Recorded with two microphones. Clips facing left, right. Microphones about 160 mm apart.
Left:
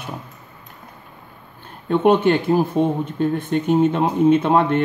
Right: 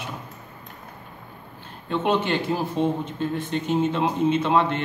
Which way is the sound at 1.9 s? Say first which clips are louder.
Left 7 dB; 55° left (ahead or behind).